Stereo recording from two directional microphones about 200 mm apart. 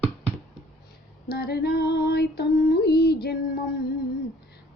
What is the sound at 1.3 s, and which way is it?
Female singing, 50° left (ahead or behind).